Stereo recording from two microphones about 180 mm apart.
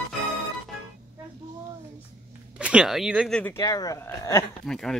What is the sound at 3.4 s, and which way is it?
Speech, 10° left (ahead or behind).